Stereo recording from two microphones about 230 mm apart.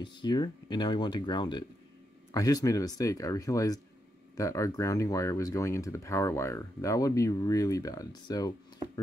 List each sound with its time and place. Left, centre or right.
0.0 s speech: centre